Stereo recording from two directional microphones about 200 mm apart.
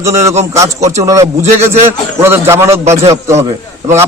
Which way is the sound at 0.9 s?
15° right (ahead or behind).